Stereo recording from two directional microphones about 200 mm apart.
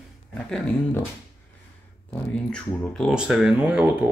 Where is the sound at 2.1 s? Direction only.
5° left (ahead or behind).